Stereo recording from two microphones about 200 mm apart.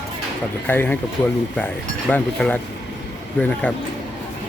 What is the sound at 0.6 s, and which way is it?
Speech, 10° left (ahead or behind).